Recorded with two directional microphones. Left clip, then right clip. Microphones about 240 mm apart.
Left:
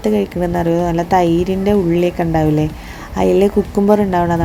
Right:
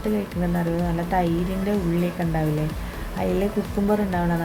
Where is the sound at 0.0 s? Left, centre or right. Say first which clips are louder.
Left 10 dB; left.